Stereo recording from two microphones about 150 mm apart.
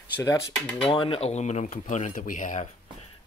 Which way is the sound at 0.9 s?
35° left (ahead or behind).